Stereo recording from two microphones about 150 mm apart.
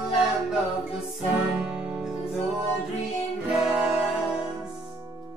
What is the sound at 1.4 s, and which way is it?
Music, centre (ahead or behind).